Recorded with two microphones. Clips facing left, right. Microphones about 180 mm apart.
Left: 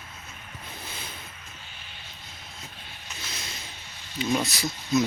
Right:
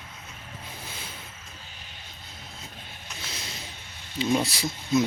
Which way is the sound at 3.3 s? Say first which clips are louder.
Right 1 dB; 30° right (ahead or behind).